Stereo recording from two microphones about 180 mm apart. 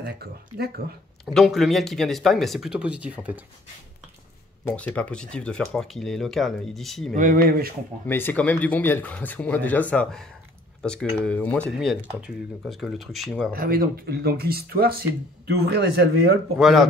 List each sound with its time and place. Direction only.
0.0 s speech: 60° right (ahead or behind)
1.2 s speech: centre (ahead or behind)
4.6 s speech: 5° left (ahead or behind)
7.2 s speech: 50° right (ahead or behind)
8.1 s speech: 10° left (ahead or behind)
13.5 s speech: 55° right (ahead or behind)
16.5 s speech: centre (ahead or behind)